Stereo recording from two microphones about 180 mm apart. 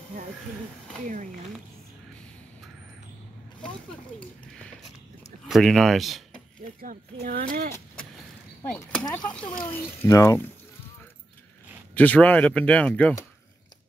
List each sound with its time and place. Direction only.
5.5 s speech: centre (ahead or behind)
6.8 s speech: 55° right (ahead or behind)
8.7 s speech: 5° left (ahead or behind)
9.7 s speech: 15° left (ahead or behind)
11.9 s speech: 10° left (ahead or behind)